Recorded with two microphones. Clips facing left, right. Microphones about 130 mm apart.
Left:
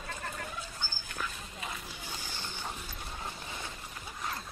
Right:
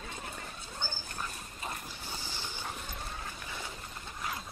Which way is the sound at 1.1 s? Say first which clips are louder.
Left 1 dB; 35° right (ahead or behind).